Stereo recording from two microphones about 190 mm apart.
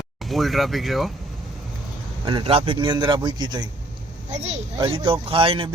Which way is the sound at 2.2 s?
25° right (ahead or behind).